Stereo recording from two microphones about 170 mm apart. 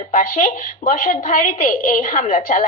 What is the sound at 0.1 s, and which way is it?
A woman's voice, 50° left (ahead or behind).